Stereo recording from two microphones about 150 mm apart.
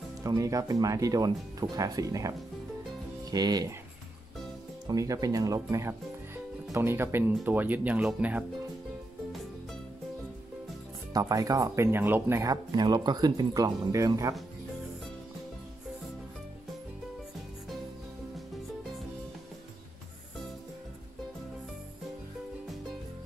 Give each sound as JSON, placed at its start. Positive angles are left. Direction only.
{"t": 0.2, "sound": "speech", "side_deg": -20}
{"t": 4.8, "sound": "speech", "side_deg": -20}
{"t": 11.1, "sound": "speech", "side_deg": -25}